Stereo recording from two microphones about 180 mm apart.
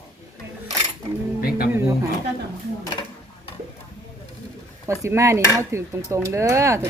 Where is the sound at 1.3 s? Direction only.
55° left (ahead or behind).